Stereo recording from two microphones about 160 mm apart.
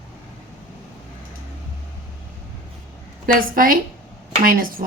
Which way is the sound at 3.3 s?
60° right (ahead or behind).